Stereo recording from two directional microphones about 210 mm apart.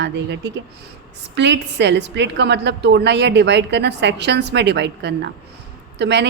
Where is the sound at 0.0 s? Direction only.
55° right (ahead or behind).